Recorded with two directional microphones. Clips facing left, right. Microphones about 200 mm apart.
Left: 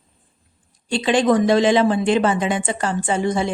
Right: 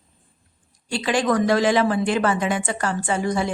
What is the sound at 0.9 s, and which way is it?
Speech, 25° left (ahead or behind).